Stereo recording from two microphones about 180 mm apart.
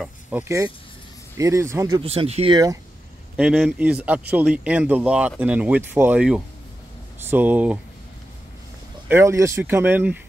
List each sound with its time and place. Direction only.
0.0 s a sound: 10° right (ahead or behind)
1.3 s a man's voice: 15° right (ahead or behind)
2.0 s speech: 30° right (ahead or behind)
2.5 s speech: 20° right (ahead or behind)
3.3 s a man's voice: centre (ahead or behind)
9.1 s a man's voice: 15° right (ahead or behind)